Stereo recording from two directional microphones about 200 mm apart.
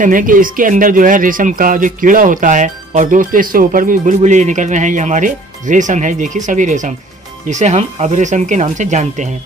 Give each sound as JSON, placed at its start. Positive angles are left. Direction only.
{"t": 0.0, "sound": "speech", "side_deg": -40}